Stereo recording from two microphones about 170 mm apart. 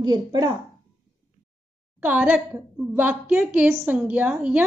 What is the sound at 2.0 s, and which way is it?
A woman's voice, 10° right (ahead or behind).